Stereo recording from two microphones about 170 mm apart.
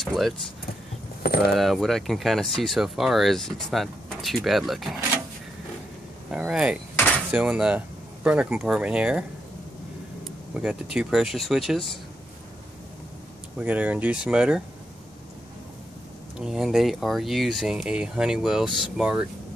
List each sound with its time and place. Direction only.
0.0 s speech: centre (ahead or behind)
1.2 s a sound: 65° left (ahead or behind)
1.5 s speech: centre (ahead or behind)
6.3 s speech: 5° right (ahead or behind)
10.5 s speech: 5° right (ahead or behind)
13.6 s speech: 10° right (ahead or behind)
16.3 s speech: 5° right (ahead or behind)